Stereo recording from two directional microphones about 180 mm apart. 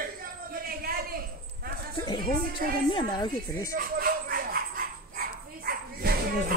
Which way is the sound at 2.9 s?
25° left (ahead or behind).